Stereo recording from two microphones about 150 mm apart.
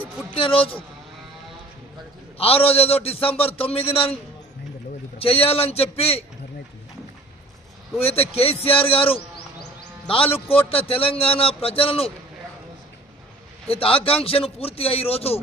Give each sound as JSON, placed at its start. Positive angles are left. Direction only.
{"t": 0.0, "sound": "a man's voice", "side_deg": 35}
{"t": 2.3, "sound": "a man's voice", "side_deg": 40}
{"t": 5.2, "sound": "a man's voice", "side_deg": 40}
{"t": 8.0, "sound": "a man's voice", "side_deg": 40}
{"t": 13.7, "sound": "a man's voice", "side_deg": 40}